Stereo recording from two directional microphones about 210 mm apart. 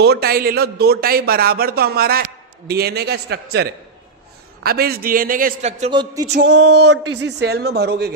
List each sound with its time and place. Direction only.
0.0 s a man's voice: 50° right (ahead or behind)
5.9 s music: 20° right (ahead or behind)
6.3 s a sound: 55° right (ahead or behind)
7.2 s a man's voice: 55° right (ahead or behind)